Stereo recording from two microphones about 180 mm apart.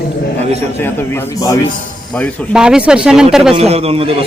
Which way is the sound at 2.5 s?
5° right (ahead or behind).